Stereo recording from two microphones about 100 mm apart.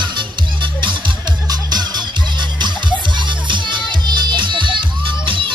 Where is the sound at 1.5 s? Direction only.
45° right (ahead or behind).